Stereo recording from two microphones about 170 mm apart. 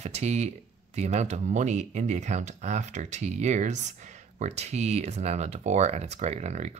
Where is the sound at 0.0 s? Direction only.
40° right (ahead or behind).